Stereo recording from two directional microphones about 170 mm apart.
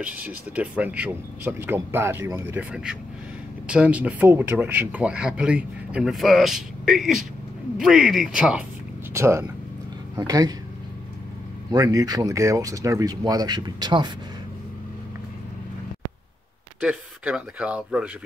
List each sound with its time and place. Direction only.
0.0 s speech: 10° right (ahead or behind)
9.1 s speech: 15° right (ahead or behind)
11.7 s speech: 20° right (ahead or behind)
16.8 s speech: 5° right (ahead or behind)